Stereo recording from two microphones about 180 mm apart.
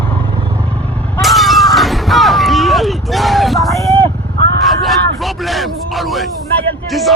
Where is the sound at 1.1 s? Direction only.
Centre (ahead or behind).